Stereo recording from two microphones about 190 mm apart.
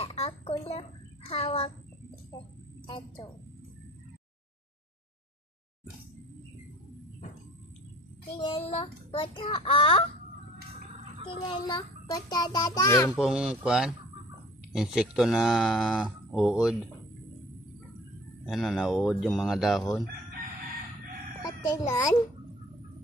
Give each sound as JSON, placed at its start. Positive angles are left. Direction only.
{"t": 0.0, "sound": "a sound", "side_deg": 30}
{"t": 8.4, "sound": "a child's voice", "side_deg": 25}
{"t": 11.4, "sound": "a child's voice", "side_deg": 25}
{"t": 13.2, "sound": "speech", "side_deg": -5}
{"t": 18.4, "sound": "speech", "side_deg": 0}
{"t": 21.4, "sound": "a child's voice", "side_deg": 20}